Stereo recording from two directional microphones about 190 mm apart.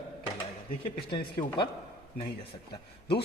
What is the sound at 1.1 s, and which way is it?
Speech, 25° left (ahead or behind).